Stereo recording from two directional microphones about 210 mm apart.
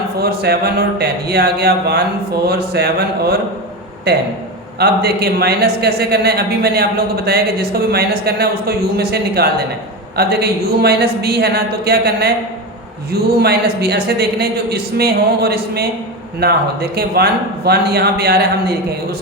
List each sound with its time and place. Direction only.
0.2 s speech: 50° right (ahead or behind)